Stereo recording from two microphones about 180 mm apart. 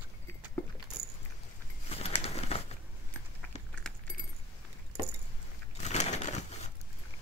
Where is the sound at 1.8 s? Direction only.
35° left (ahead or behind).